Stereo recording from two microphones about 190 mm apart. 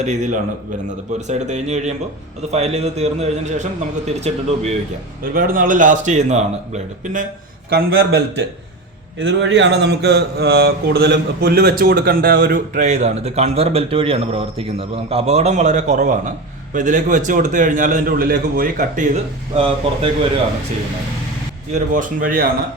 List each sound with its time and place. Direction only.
0.0 s a man's voice: 40° right (ahead or behind)
5.2 s a man's voice: 50° right (ahead or behind)
7.7 s a man's voice: 55° right (ahead or behind)
9.1 s a man's voice: 70° right (ahead or behind); by 20.1 s 30° right (ahead or behind)
21.9 s a man's voice: 45° right (ahead or behind)